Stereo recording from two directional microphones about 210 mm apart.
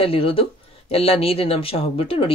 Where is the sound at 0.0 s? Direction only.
25° left (ahead or behind).